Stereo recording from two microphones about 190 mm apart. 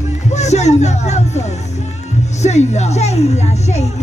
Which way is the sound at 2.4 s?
35° left (ahead or behind).